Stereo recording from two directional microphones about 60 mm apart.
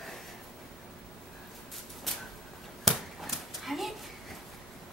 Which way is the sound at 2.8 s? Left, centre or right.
Centre.